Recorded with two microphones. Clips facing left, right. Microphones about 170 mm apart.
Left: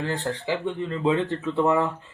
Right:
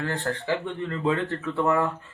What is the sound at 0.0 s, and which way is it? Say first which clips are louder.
Speech: left 1 dB; 20° left (ahead or behind).